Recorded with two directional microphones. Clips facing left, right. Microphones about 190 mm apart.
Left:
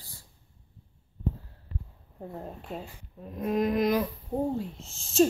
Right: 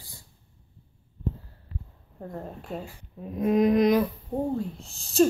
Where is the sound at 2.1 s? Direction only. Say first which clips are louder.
Right 2 dB; 5° left (ahead or behind).